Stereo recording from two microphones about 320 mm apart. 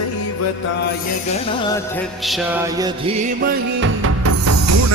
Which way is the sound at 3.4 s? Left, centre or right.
Right.